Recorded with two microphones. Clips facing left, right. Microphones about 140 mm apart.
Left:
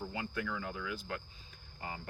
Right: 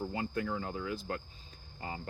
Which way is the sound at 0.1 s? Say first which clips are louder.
Right 4 dB; 35° right (ahead or behind).